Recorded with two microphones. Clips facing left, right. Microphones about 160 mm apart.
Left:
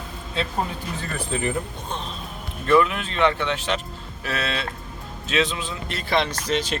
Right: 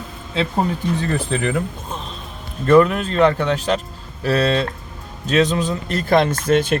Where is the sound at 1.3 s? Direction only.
90° right.